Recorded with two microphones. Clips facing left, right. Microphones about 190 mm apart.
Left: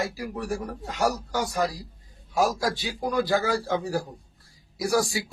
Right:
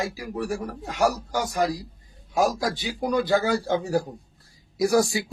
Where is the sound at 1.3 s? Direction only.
15° right (ahead or behind).